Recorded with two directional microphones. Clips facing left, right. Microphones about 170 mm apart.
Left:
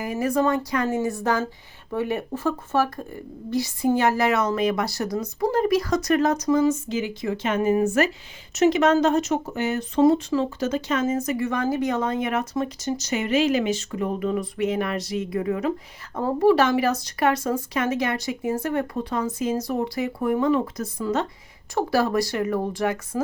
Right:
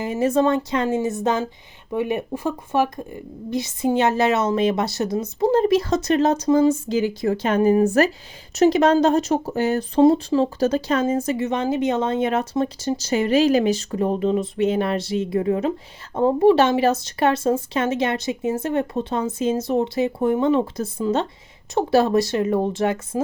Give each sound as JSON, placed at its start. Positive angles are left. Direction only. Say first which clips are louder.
{"t": 0.0, "sound": "speech", "louder": "right 3 dB", "side_deg": -25}